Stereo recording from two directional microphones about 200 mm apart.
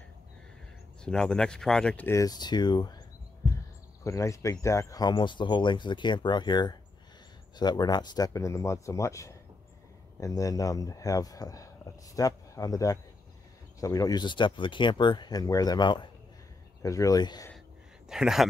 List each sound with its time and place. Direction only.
1.0 s speech: 5° left (ahead or behind); by 3.0 s 20° left (ahead or behind)
4.0 s speech: 15° left (ahead or behind)
18.0 s speech: 5° right (ahead or behind)